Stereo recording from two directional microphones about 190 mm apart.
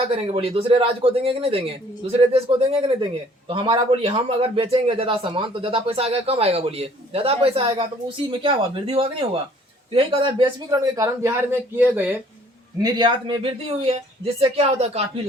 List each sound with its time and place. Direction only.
0.3 s a man's voice: 30° right (ahead or behind); by 12.2 s 10° right (ahead or behind)
12.8 s speech: 25° right (ahead or behind)